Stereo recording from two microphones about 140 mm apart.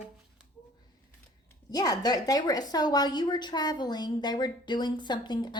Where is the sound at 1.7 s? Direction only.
25° left (ahead or behind).